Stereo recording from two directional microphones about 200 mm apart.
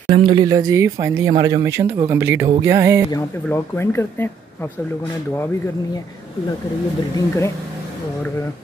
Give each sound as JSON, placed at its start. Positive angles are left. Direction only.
{"t": 0.1, "sound": "speech", "side_deg": -25}
{"t": 3.4, "sound": "speech", "side_deg": 10}
{"t": 7.2, "sound": "speech", "side_deg": 15}